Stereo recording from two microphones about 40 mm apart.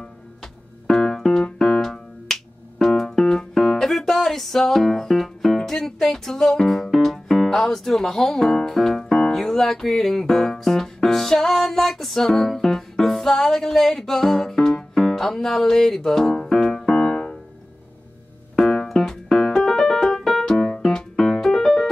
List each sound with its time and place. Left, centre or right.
0.4 s keyboard: centre
1.6 s finger snapping: centre
8.5 s speech: centre
8.7 s piano: centre
9.2 s music: centre
16.8 s keyboard: left
18.6 s music: centre
18.9 s piano: centre
20.5 s music: left